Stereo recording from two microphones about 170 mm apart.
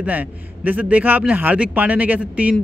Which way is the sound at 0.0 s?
10° right (ahead or behind).